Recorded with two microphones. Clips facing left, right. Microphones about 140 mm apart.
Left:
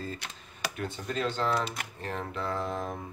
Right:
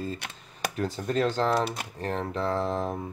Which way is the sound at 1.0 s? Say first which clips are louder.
Right 5 dB; 45° right (ahead or behind).